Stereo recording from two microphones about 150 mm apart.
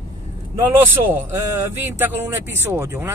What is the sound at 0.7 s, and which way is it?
Speech, 15° right (ahead or behind).